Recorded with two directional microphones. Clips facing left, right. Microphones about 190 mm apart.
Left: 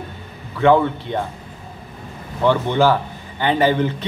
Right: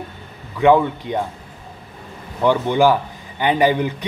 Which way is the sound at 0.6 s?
15° right (ahead or behind).